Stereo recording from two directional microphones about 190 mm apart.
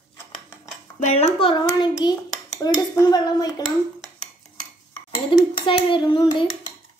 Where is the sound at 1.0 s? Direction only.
35° left (ahead or behind).